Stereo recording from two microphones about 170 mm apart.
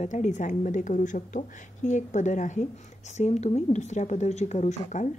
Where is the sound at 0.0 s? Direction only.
45° left (ahead or behind).